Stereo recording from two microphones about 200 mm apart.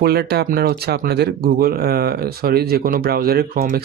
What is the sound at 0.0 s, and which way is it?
Speech, 55° right (ahead or behind).